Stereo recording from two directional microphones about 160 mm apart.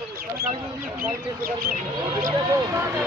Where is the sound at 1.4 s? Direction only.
65° right (ahead or behind).